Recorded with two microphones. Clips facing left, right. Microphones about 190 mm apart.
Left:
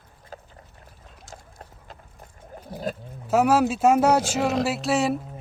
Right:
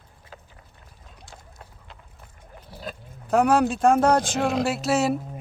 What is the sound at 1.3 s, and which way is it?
Duck, 40° left (ahead or behind).